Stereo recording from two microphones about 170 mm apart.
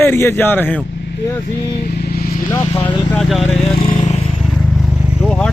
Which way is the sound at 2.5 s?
20° left (ahead or behind).